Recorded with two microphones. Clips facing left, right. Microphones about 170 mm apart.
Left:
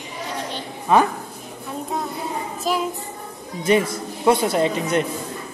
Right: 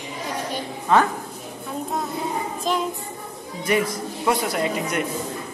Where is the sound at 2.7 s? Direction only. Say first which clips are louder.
Left 1 dB; 5° left (ahead or behind).